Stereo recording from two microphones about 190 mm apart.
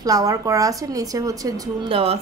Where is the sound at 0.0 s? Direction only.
20° right (ahead or behind).